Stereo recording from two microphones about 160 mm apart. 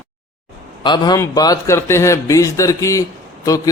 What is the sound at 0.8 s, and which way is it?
A man's voice, 25° left (ahead or behind).